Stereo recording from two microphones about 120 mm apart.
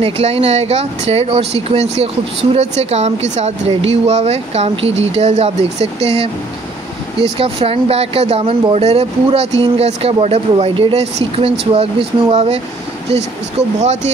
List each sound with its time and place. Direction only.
0.0 s speech: 55° right (ahead or behind)